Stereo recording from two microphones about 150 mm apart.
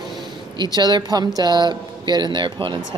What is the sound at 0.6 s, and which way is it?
Speech, 30° right (ahead or behind).